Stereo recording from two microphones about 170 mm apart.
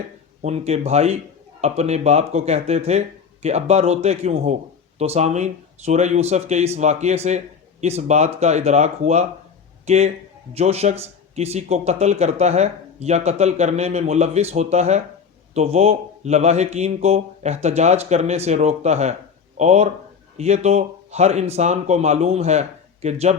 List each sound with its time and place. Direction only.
0.4 s speech: 40° right (ahead or behind)